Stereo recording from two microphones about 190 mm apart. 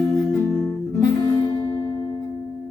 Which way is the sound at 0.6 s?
20° left (ahead or behind).